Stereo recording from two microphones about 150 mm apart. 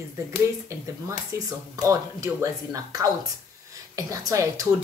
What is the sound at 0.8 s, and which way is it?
Speech, 20° right (ahead or behind).